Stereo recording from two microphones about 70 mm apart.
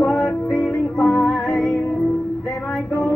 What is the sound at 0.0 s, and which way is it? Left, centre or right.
Music, centre.